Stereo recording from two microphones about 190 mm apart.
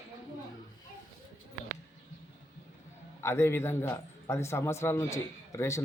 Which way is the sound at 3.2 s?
15° left (ahead or behind).